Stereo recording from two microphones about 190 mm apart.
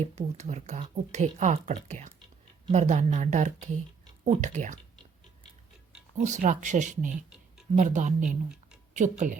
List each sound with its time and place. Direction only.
0.0 s a woman's voice: 35° right (ahead or behind)
6.1 s a woman's voice: 40° right (ahead or behind)
8.2 s speech: 5° right (ahead or behind)
8.9 s speech: 40° right (ahead or behind)